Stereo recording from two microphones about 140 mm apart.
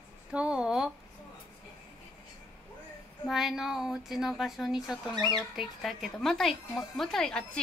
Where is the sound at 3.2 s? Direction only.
Centre (ahead or behind).